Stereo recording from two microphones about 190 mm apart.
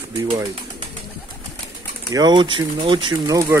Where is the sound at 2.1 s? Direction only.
25° right (ahead or behind).